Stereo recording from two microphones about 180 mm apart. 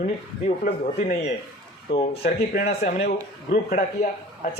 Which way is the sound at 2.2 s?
40° left (ahead or behind).